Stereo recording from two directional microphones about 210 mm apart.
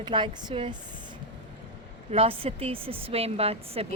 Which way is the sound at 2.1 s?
25° right (ahead or behind).